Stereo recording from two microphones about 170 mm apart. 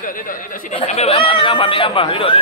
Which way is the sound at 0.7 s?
35° left (ahead or behind).